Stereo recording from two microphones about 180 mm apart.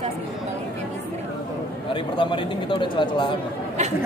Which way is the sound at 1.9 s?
30° left (ahead or behind).